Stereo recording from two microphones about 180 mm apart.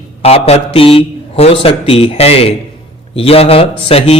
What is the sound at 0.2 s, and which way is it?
A man's voice, 35° left (ahead or behind).